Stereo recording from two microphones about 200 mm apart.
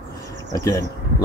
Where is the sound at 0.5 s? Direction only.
15° left (ahead or behind).